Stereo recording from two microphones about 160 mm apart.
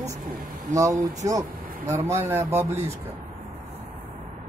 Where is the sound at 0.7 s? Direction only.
20° right (ahead or behind).